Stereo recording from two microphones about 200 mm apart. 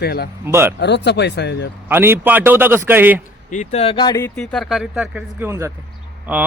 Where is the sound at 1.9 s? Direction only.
10° right (ahead or behind).